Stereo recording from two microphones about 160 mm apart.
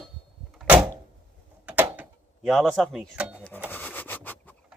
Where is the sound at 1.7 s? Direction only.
10° right (ahead or behind).